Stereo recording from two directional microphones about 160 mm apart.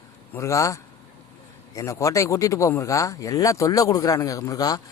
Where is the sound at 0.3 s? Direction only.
20° left (ahead or behind).